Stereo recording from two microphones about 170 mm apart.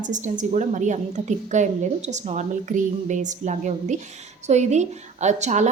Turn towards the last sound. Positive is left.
turn(degrees=-45)  # may be behind; listen again after turning